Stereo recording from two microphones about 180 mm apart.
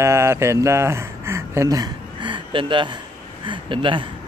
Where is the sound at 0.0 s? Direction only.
15° right (ahead or behind).